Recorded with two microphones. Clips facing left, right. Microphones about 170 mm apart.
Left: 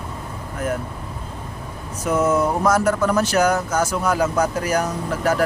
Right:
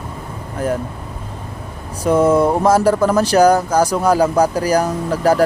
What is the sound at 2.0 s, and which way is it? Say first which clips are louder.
Speech: right 6 dB; 30° right (ahead or behind).